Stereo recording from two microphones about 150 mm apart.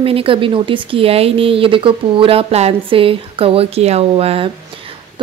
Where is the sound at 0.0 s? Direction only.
40° right (ahead or behind).